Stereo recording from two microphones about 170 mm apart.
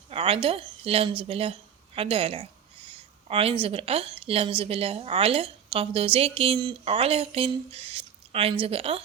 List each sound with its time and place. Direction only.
0.1 s a woman's voice: 35° right (ahead or behind)